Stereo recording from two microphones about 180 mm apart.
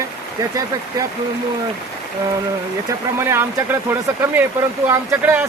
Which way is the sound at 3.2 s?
15° right (ahead or behind).